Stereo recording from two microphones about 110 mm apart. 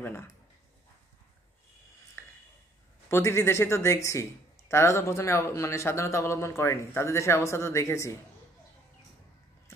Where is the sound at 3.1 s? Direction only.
25° left (ahead or behind).